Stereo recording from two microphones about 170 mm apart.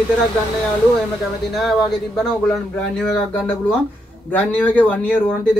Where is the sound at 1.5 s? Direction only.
Centre (ahead or behind).